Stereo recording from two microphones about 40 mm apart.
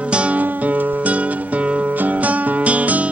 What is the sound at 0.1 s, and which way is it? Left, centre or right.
Music, right.